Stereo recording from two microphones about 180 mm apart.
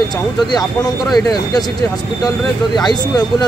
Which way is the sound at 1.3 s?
20° left (ahead or behind).